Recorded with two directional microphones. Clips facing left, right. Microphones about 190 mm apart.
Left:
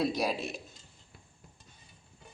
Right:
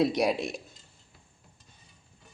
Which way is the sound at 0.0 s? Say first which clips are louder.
Right 5 dB; 20° right (ahead or behind).